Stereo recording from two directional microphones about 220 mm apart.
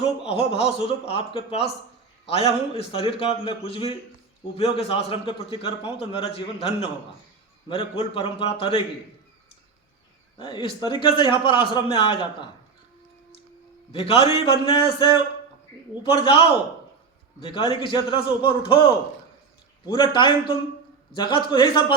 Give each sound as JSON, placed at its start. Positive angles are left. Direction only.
{"t": 0.0, "sound": "a man's voice", "side_deg": 25}
{"t": 10.3, "sound": "a man's voice", "side_deg": 20}
{"t": 13.9, "sound": "a man's voice", "side_deg": 25}
{"t": 17.4, "sound": "a man's voice", "side_deg": 25}
{"t": 19.8, "sound": "a man's voice", "side_deg": 20}